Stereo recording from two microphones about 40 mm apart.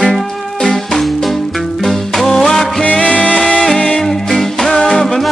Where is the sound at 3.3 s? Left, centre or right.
Centre.